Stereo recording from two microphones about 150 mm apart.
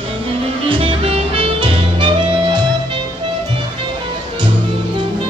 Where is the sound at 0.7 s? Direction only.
35° right (ahead or behind).